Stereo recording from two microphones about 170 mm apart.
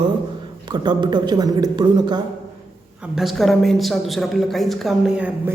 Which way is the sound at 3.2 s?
Centre (ahead or behind).